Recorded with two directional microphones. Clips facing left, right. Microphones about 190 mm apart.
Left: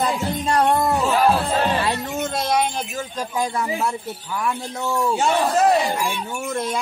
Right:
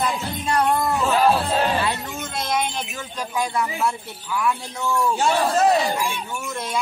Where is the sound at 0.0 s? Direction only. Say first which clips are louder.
Left 3 dB; 35° left (ahead or behind).